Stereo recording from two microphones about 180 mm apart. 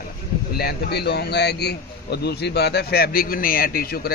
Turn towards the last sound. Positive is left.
turn(degrees=55)  # may be behind; listen again after turning